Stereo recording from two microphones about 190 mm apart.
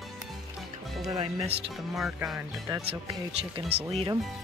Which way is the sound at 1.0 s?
25° right (ahead or behind).